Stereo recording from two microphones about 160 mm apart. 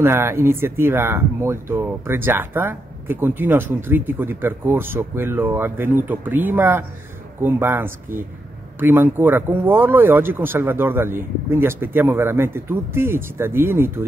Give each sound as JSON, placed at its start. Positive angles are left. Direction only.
{"t": 0.0, "sound": "speech", "side_deg": -15}